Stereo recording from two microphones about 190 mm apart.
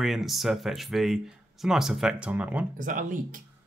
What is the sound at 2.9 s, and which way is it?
Speech, 45° right (ahead or behind).